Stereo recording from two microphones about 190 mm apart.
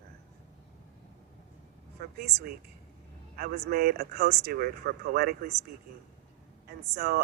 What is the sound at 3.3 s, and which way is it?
Speech, 55° right (ahead or behind).